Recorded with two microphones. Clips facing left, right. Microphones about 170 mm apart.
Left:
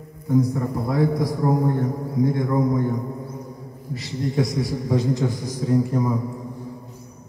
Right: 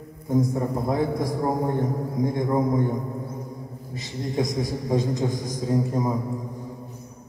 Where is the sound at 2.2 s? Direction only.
20° right (ahead or behind).